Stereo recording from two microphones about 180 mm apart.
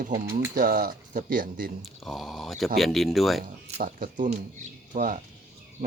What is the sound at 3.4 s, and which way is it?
Speech, 50° right (ahead or behind).